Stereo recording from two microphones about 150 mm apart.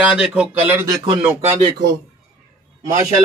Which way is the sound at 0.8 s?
30° right (ahead or behind).